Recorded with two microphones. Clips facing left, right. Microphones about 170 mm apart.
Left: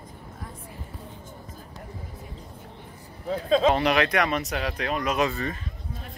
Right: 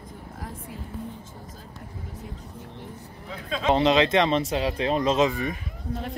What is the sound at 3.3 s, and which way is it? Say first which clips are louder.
Speech: left 10 dB; 40° left (ahead or behind).